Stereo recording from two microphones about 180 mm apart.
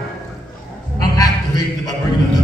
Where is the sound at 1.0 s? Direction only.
20° left (ahead or behind).